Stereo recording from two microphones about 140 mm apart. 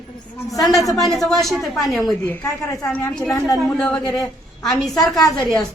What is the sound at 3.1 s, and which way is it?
A man's voice, centre (ahead or behind).